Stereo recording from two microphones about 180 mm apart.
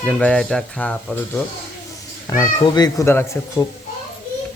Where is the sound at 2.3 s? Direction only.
20° left (ahead or behind).